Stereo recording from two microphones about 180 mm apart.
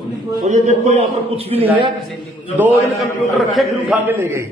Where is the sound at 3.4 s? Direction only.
Centre (ahead or behind).